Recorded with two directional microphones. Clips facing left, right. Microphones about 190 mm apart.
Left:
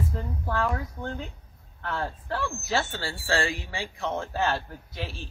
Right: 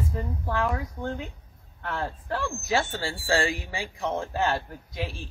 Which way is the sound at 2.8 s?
30° right (ahead or behind).